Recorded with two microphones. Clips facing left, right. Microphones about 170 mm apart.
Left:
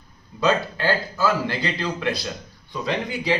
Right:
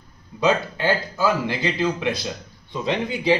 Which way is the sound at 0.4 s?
20° right (ahead or behind).